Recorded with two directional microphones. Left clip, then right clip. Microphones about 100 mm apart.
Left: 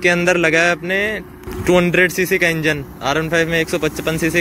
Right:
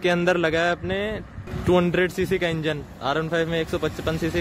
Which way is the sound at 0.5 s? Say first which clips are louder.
Left 8 dB; 15° right (ahead or behind).